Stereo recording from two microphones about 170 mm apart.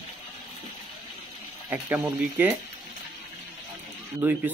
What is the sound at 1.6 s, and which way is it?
Speech, 10° right (ahead or behind).